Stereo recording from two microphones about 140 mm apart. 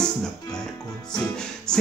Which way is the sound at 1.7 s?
5° left (ahead or behind).